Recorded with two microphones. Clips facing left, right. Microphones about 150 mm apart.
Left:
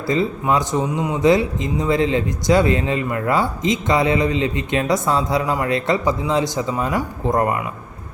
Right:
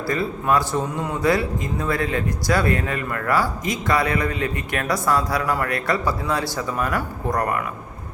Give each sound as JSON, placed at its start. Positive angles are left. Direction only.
{"t": 0.1, "sound": "speech", "side_deg": 20}